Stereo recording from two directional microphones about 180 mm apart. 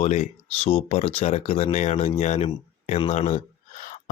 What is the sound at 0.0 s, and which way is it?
Speech, 35° left (ahead or behind).